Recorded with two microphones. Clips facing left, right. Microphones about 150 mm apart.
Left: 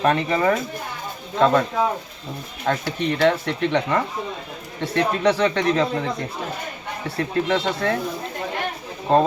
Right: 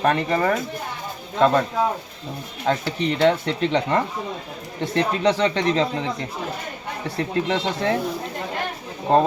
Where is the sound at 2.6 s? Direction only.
15° right (ahead or behind).